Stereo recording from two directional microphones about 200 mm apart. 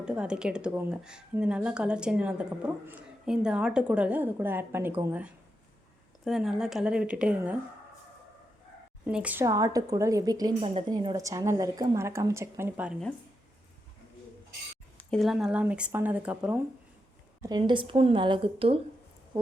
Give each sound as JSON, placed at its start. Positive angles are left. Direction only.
{"t": 0.0, "sound": "speech", "side_deg": -5}
{"t": 9.0, "sound": "a woman's voice", "side_deg": -5}
{"t": 14.9, "sound": "speech", "side_deg": 0}
{"t": 17.4, "sound": "a woman's voice", "side_deg": -20}